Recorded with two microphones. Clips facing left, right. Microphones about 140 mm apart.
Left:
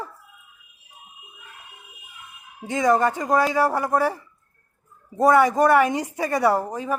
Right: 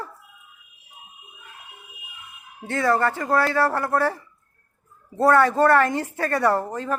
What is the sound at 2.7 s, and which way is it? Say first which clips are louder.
Speech: left 2 dB; 15° left (ahead or behind).